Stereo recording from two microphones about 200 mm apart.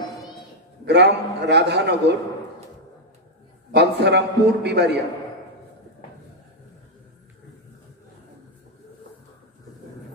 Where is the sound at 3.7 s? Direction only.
55° right (ahead or behind).